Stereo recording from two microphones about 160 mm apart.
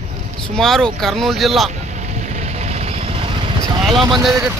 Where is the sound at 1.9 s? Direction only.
45° right (ahead or behind).